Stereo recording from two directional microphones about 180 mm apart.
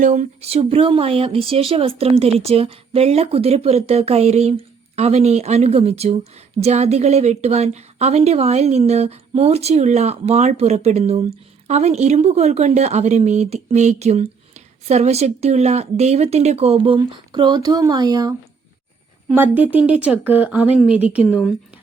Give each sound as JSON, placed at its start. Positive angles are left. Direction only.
{"t": 0.0, "sound": "a woman's voice", "side_deg": -40}
{"t": 19.3, "sound": "speech", "side_deg": -10}